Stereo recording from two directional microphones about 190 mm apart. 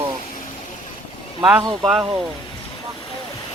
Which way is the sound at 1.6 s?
25° right (ahead or behind).